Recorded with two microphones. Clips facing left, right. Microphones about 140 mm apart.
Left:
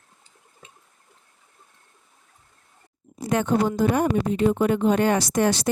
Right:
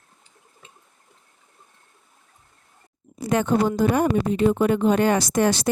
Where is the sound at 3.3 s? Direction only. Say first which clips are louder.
Right 1 dB; 90° right.